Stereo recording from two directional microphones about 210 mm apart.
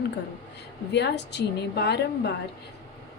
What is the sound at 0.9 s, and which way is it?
A woman's voice, 55° left (ahead or behind).